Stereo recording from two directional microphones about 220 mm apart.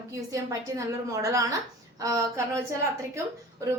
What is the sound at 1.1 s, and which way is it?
A woman's voice, 15° right (ahead or behind).